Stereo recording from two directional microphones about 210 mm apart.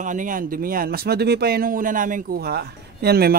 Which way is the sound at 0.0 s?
40° right (ahead or behind).